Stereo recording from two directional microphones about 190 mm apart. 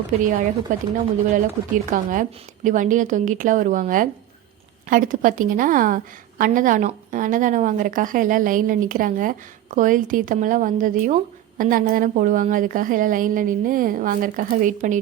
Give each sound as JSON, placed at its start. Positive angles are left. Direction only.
{"t": 0.7, "sound": "a woman's voice", "side_deg": -40}